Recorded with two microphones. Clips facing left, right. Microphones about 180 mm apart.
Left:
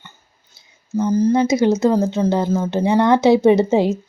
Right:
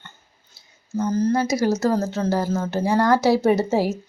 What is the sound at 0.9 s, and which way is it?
Speech, 15° left (ahead or behind).